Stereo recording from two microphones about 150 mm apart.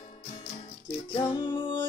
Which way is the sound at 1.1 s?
35° left (ahead or behind).